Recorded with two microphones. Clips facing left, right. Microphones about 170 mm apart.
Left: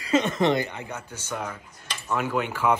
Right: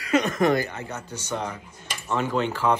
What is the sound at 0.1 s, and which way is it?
Speech, 25° left (ahead or behind).